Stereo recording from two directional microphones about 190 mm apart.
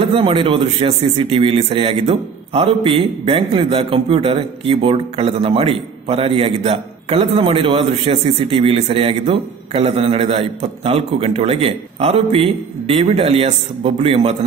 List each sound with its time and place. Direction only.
0.0 s a man's voice: 30° right (ahead or behind)